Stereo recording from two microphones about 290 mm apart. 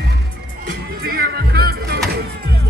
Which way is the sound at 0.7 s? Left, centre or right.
Right.